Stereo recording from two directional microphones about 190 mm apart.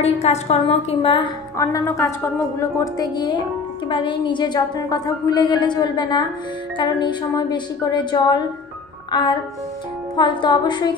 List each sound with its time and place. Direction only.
0.0 s a woman's voice: 35° left (ahead or behind)